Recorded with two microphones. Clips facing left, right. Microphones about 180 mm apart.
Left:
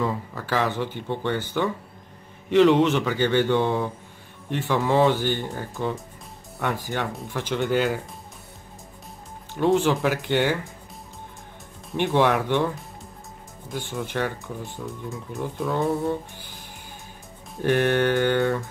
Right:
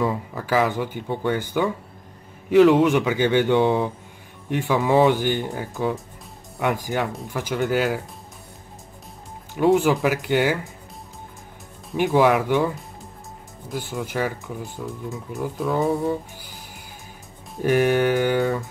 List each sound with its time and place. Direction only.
0.0 s speech: 10° right (ahead or behind)
4.6 s speech: centre (ahead or behind)
4.9 s speech: 15° right (ahead or behind)
5.5 s speech: 5° right (ahead or behind)
9.6 s speech: 10° right (ahead or behind)
11.9 s speech: 5° right (ahead or behind)
17.6 s speech: 5° right (ahead or behind)